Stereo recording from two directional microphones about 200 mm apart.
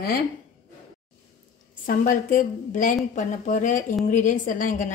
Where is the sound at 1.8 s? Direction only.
40° left (ahead or behind).